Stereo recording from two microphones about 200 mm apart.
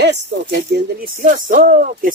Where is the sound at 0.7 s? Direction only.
45° right (ahead or behind).